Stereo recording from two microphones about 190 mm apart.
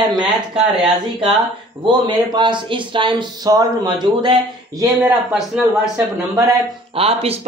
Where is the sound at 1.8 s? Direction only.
25° right (ahead or behind).